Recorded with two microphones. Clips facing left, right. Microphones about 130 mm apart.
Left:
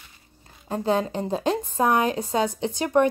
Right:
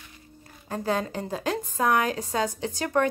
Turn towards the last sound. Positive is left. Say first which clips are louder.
# left 4 dB
turn(degrees=20)  # may be behind; listen again after turning